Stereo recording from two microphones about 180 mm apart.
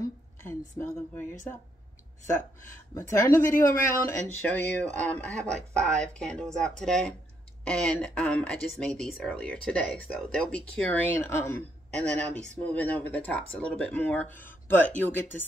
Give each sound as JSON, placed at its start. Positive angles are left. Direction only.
{"t": 0.4, "sound": "a woman's voice", "side_deg": 15}
{"t": 2.9, "sound": "speech", "side_deg": 15}
{"t": 3.3, "sound": "speech", "side_deg": 50}
{"t": 3.6, "sound": "speech", "side_deg": 15}